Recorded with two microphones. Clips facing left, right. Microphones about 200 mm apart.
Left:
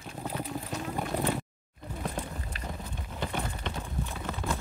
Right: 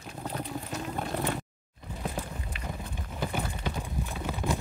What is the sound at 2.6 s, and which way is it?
Clip-clop, centre (ahead or behind).